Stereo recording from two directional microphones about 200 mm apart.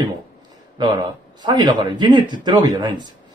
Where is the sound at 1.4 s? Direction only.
20° right (ahead or behind).